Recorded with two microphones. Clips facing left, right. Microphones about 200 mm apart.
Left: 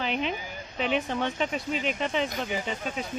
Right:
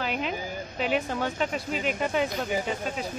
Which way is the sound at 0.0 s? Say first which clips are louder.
Left 1 dB; 5° right (ahead or behind).